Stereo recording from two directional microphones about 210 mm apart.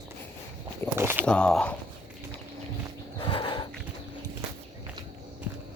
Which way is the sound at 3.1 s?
25° left (ahead or behind).